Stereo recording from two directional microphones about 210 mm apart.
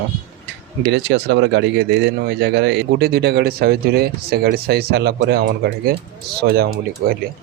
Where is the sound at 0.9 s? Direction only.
55° right (ahead or behind).